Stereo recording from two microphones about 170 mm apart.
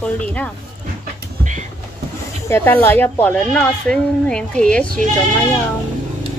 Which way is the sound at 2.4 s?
10° left (ahead or behind).